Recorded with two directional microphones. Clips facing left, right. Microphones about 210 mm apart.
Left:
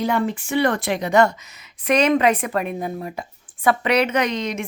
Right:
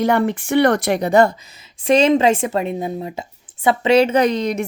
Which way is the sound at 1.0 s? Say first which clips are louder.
Right 1 dB; 35° right (ahead or behind).